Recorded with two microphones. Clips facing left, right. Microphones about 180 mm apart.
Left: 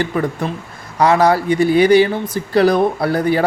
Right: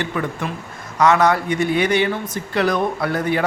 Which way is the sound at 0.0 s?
35° left (ahead or behind).